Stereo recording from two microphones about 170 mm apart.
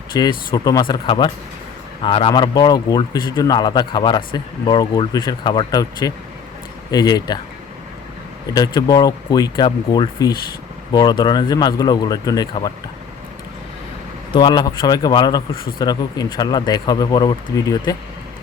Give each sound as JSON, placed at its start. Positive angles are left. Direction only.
{"t": 0.1, "sound": "speech", "side_deg": 25}
{"t": 8.5, "sound": "speech", "side_deg": 20}
{"t": 14.3, "sound": "speech", "side_deg": 25}